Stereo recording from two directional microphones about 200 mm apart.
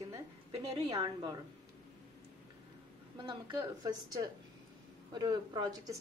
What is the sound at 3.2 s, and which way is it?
A woman's voice, 20° right (ahead or behind).